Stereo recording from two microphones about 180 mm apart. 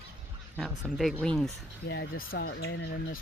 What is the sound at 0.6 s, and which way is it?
Speech, centre (ahead or behind).